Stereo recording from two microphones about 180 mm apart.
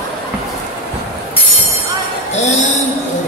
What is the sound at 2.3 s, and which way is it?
Music, 40° left (ahead or behind).